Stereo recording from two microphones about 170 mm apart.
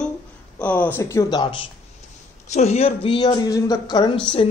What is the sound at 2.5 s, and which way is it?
Speech, 40° left (ahead or behind).